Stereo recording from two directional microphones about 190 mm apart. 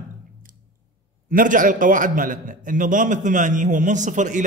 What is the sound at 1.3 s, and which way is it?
A man's voice, 45° right (ahead or behind).